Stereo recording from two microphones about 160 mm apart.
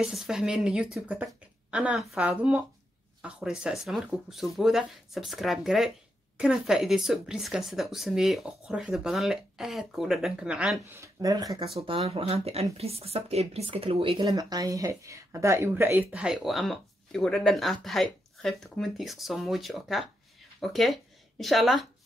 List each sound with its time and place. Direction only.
0.0 s speech: 5° right (ahead or behind)
11.0 s speech: 25° right (ahead or behind)
12.1 s speech: 40° right (ahead or behind)
14.2 s speech: 25° right (ahead or behind); by 21.8 s centre (ahead or behind)